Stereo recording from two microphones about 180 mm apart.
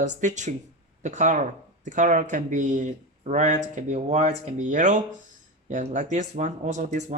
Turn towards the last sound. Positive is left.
turn(degrees=-40)  # may be behind; listen again after turning